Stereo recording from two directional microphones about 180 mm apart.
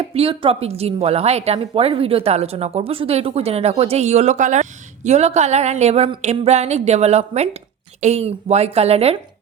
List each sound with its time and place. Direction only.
0.0 s speech: 30° right (ahead or behind)